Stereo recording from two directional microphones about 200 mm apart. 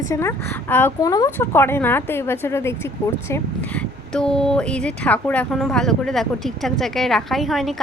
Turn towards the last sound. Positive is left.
turn(degrees=0)  # may be behind; listen again after turning